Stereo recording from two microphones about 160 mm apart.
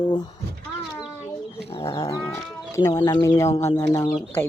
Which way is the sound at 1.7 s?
20° left (ahead or behind).